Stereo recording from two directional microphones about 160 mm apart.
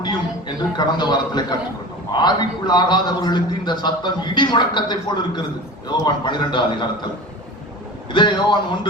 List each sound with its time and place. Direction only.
0.0 s a man's voice: 30° left (ahead or behind)
8.1 s a man's voice: 30° left (ahead or behind)